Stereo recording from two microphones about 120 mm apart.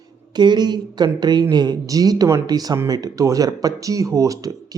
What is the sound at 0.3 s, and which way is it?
Speech, 35° right (ahead or behind).